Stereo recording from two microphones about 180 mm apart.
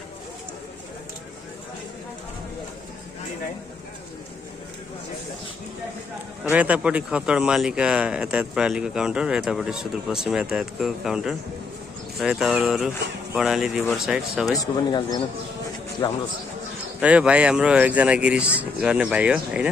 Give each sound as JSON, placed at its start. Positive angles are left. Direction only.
{"t": 6.5, "sound": "speech", "side_deg": -10}
{"t": 14.5, "sound": "speech", "side_deg": 20}
{"t": 17.0, "sound": "speech", "side_deg": -5}